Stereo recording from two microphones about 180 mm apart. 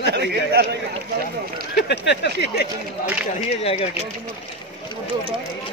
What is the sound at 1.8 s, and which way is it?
Speech, 70° left (ahead or behind).